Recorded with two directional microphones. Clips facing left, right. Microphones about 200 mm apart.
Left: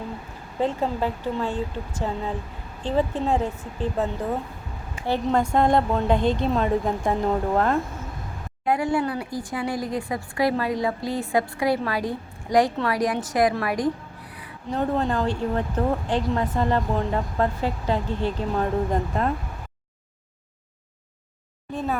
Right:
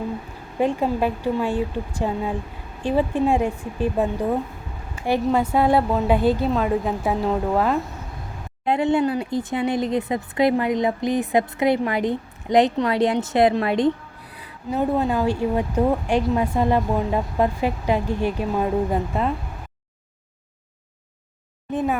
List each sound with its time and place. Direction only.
0.6 s speech: 15° right (ahead or behind)
8.6 s speech: 25° right (ahead or behind)
14.7 s speech: 10° right (ahead or behind)
21.7 s speech: 15° right (ahead or behind)